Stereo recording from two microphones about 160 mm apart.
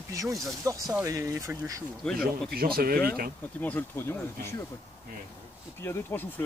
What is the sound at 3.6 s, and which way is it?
Speech, 10° left (ahead or behind).